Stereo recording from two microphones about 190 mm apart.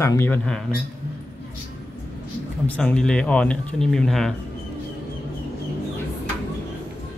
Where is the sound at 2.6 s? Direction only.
5° left (ahead or behind).